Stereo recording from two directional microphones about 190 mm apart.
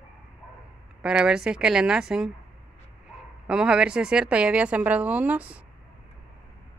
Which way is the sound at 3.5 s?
5° right (ahead or behind).